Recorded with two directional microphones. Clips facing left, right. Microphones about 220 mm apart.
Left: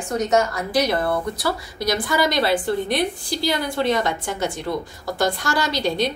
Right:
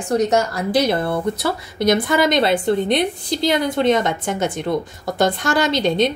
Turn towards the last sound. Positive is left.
turn(degrees=-20)  # may be behind; listen again after turning